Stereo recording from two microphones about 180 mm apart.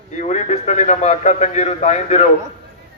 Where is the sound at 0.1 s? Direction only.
40° left (ahead or behind).